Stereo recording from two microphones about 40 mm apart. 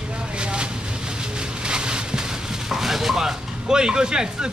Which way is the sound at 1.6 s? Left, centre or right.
Right.